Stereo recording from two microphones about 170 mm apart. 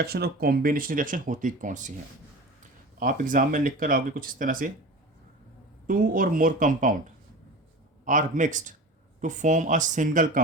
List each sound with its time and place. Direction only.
0.0 s speech: 70° right (ahead or behind); by 1.9 s 50° right (ahead or behind)
3.0 s speech: 50° right (ahead or behind)
5.9 s speech: 55° right (ahead or behind)
8.0 s speech: 50° right (ahead or behind)